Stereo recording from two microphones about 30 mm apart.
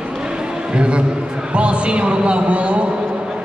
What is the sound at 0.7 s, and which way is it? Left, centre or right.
A man's voice, right.